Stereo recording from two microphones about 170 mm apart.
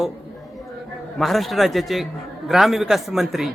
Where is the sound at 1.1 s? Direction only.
Centre (ahead or behind).